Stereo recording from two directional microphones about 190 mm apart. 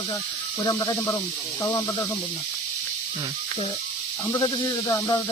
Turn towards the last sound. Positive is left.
turn(degrees=20)  # may be behind; listen again after turning